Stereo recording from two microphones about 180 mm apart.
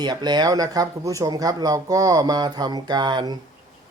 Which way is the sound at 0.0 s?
25° right (ahead or behind).